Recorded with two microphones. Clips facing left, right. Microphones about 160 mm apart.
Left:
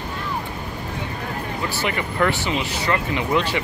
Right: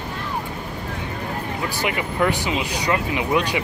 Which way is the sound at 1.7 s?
10° right (ahead or behind).